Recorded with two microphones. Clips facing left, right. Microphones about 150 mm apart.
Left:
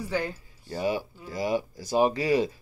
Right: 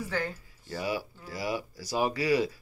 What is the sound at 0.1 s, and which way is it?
Speech, 15° left (ahead or behind).